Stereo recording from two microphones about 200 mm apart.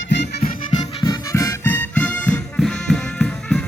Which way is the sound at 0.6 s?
20° left (ahead or behind).